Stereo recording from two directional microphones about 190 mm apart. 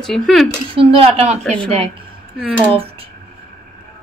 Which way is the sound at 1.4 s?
5° left (ahead or behind).